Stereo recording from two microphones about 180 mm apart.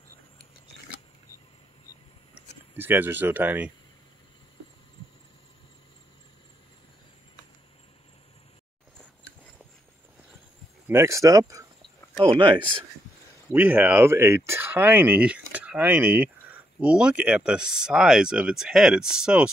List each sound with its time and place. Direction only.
2.3 s speech: 10° right (ahead or behind)
10.9 s speech: 15° right (ahead or behind)
13.5 s speech: 10° right (ahead or behind)